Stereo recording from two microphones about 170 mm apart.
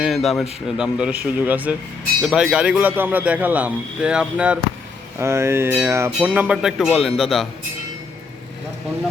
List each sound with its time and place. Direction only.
0.0 s a man's voice: centre (ahead or behind)